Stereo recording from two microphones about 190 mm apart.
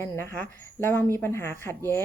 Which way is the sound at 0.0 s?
10° left (ahead or behind).